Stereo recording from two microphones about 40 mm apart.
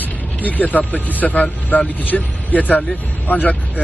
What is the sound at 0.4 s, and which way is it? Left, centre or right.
Speech, left.